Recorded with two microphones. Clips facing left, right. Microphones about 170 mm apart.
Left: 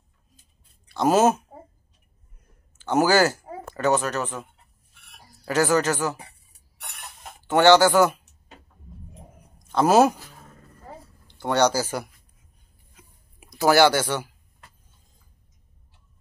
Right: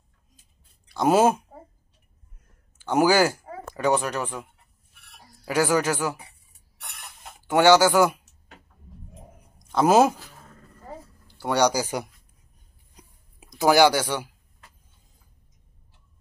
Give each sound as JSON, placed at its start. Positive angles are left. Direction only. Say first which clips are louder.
{"t": 0.9, "sound": "speech", "louder": "even", "side_deg": -10}
{"t": 2.8, "sound": "speech", "louder": "even", "side_deg": -10}
{"t": 7.4, "sound": "speech", "louder": "left 1 dB", "side_deg": -10}
{"t": 9.7, "sound": "speech", "louder": "left 1 dB", "side_deg": -10}
{"t": 11.3, "sound": "speech", "louder": "left 1 dB", "side_deg": -10}
{"t": 13.0, "sound": "chewing", "louder": "right 2 dB", "side_deg": -35}
{"t": 13.6, "sound": "speech", "louder": "even", "side_deg": -15}